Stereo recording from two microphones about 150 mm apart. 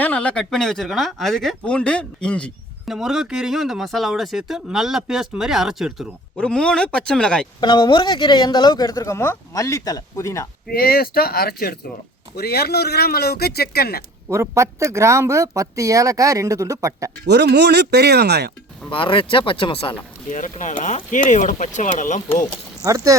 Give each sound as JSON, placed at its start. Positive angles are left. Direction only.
{"t": 0.0, "sound": "speech", "side_deg": 10}
{"t": 6.3, "sound": "speech", "side_deg": 5}
{"t": 7.6, "sound": "speech", "side_deg": 30}
{"t": 10.7, "sound": "speech", "side_deg": 90}
{"t": 14.3, "sound": "speech", "side_deg": -20}
{"t": 17.3, "sound": "speech", "side_deg": -90}
{"t": 18.9, "sound": "speech", "side_deg": 35}
{"t": 20.3, "sound": "speech", "side_deg": 55}
{"t": 22.8, "sound": "speech", "side_deg": -20}